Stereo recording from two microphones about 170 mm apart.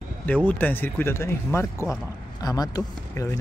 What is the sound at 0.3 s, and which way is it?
Speech, 10° left (ahead or behind).